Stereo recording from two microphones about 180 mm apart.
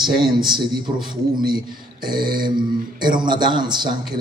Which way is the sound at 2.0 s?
25° right (ahead or behind).